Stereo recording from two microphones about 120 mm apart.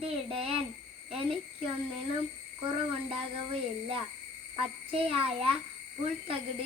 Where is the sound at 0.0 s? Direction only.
50° right (ahead or behind).